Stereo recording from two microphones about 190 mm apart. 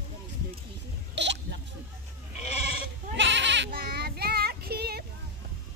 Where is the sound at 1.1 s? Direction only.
70° right (ahead or behind).